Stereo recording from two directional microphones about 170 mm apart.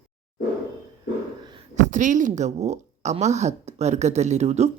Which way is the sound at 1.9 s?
45° right (ahead or behind).